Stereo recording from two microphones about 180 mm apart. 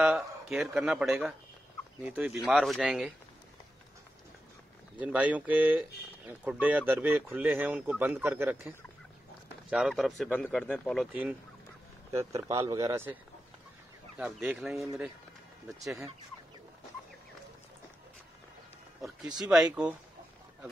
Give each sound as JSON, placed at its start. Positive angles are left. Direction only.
{"t": 0.0, "sound": "speech", "side_deg": -5}
{"t": 4.9, "sound": "speech", "side_deg": -10}
{"t": 9.7, "sound": "speech", "side_deg": 0}
{"t": 12.1, "sound": "speech", "side_deg": -15}
{"t": 14.1, "sound": "speech", "side_deg": -10}
{"t": 18.9, "sound": "speech", "side_deg": 0}